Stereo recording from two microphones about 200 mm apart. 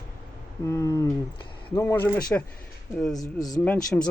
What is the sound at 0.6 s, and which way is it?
Speech, 15° left (ahead or behind).